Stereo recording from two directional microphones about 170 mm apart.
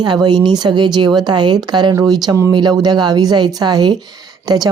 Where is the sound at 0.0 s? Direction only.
25° right (ahead or behind).